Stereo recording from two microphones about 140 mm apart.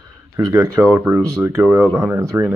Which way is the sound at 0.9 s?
15° right (ahead or behind).